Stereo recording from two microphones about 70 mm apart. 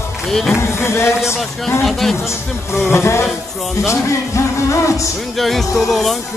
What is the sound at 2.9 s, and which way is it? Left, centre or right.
Speech, left.